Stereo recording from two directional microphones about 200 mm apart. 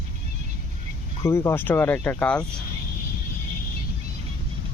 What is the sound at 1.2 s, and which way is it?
Speech, 15° left (ahead or behind).